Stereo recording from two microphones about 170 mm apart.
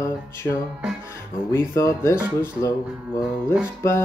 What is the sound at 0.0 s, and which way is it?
Music, 15° left (ahead or behind).